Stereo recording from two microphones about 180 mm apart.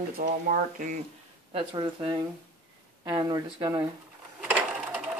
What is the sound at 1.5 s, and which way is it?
Speech, 25° right (ahead or behind).